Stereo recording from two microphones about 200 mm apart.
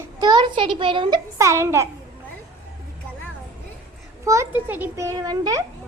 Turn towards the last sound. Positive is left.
turn(degrees=-20)  # may be behind; listen again after turning